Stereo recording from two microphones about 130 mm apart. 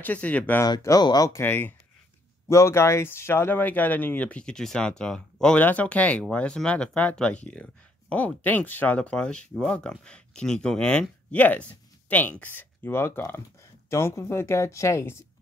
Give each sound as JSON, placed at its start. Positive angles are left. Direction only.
{"t": 0.0, "sound": "speech", "side_deg": 10}
{"t": 0.6, "sound": "speech", "side_deg": 30}
{"t": 1.4, "sound": "speech", "side_deg": 15}